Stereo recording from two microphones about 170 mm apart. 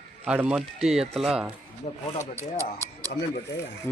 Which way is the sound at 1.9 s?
35° left (ahead or behind).